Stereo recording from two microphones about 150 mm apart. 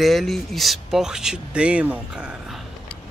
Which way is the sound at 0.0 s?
Centre (ahead or behind).